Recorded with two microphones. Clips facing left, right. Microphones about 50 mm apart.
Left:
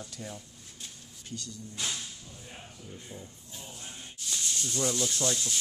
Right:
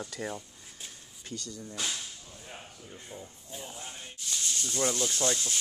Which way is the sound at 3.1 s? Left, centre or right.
Centre.